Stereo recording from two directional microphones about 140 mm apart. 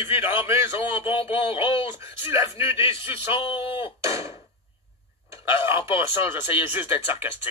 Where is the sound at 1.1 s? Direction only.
40° left (ahead or behind).